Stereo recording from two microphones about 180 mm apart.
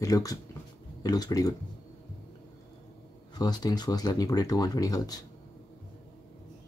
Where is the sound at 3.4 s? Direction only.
20° left (ahead or behind).